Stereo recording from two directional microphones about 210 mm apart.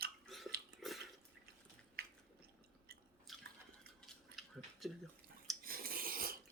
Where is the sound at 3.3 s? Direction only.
Centre (ahead or behind).